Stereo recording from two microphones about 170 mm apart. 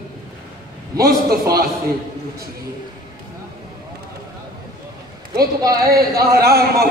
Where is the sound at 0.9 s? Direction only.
65° right (ahead or behind).